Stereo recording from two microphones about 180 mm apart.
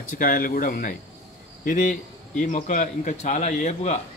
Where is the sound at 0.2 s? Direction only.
50° left (ahead or behind).